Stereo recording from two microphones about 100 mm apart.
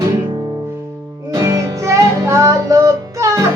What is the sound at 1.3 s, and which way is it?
Music, 35° right (ahead or behind).